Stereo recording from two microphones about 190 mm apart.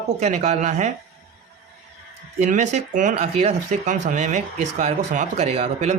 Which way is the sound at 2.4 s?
40° right (ahead or behind).